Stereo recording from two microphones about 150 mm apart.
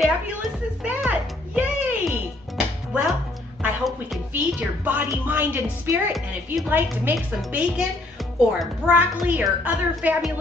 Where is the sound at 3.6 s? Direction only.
Centre (ahead or behind).